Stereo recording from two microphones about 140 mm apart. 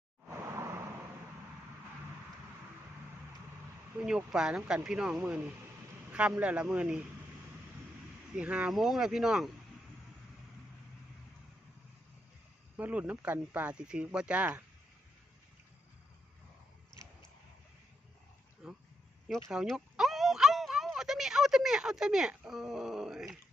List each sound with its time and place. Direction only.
0.3 s vehicle: 20° right (ahead or behind)
4.0 s speech: 5° right (ahead or behind)
8.4 s speech: 10° right (ahead or behind)
12.7 s speech: 10° right (ahead or behind)
18.6 s speech: 5° right (ahead or behind)
19.5 s a sound: 5° right (ahead or behind)